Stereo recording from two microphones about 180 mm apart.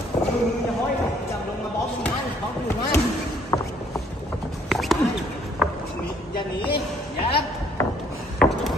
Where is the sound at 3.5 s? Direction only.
20° left (ahead or behind).